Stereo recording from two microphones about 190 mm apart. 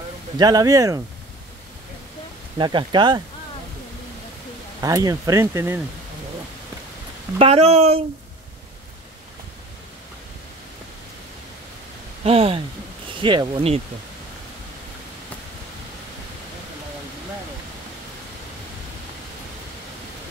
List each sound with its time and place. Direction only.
0.4 s speech: 20° right (ahead or behind)
2.5 s speech: 25° right (ahead or behind)
4.8 s speech: 20° right (ahead or behind)
7.3 s speech: 35° right (ahead or behind)
12.2 s speech: 30° right (ahead or behind)